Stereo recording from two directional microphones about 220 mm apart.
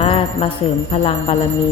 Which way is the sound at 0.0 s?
25° left (ahead or behind).